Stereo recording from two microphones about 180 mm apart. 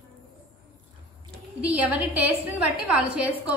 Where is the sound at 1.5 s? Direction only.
10° right (ahead or behind).